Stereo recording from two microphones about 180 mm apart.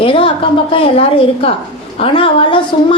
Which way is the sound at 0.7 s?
30° left (ahead or behind).